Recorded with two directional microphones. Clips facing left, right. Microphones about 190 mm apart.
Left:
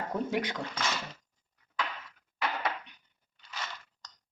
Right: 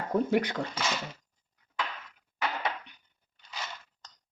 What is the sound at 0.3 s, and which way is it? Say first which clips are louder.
Speech: right 5 dB; 50° right (ahead or behind).